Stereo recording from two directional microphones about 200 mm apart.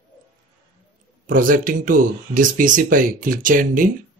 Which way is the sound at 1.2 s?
45° right (ahead or behind).